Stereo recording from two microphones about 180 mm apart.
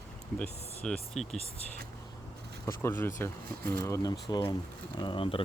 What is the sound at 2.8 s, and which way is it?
Speech, 15° left (ahead or behind).